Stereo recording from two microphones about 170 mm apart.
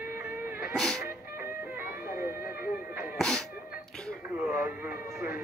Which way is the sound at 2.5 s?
10° right (ahead or behind).